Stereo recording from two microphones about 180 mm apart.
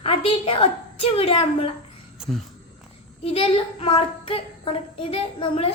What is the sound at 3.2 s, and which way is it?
A woman's voice, 30° left (ahead or behind).